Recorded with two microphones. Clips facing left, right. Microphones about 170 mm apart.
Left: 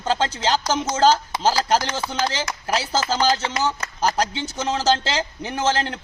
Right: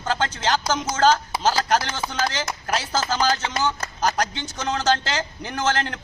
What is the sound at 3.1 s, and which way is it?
Speech, 30° left (ahead or behind).